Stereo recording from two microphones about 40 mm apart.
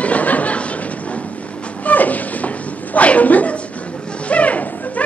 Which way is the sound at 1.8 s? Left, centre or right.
Left.